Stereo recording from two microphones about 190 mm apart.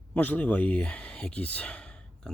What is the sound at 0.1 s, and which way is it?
Speech, 10° left (ahead or behind).